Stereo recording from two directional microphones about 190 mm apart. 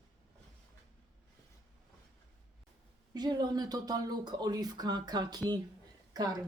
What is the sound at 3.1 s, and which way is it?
Speech, 20° right (ahead or behind).